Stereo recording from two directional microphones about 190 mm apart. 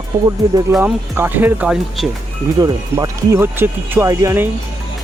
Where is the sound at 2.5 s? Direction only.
20° right (ahead or behind).